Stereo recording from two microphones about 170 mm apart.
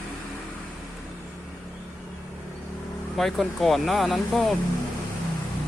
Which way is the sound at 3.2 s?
Centre (ahead or behind).